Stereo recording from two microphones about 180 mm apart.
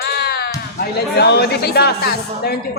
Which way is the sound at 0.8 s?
65° left (ahead or behind).